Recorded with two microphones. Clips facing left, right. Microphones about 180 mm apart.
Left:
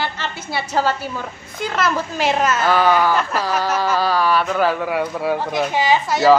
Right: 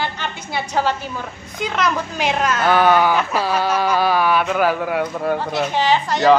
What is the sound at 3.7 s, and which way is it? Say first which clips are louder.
Insect: right 1 dB; 15° right (ahead or behind).